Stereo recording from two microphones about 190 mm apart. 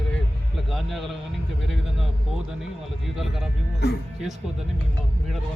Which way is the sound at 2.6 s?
Centre (ahead or behind).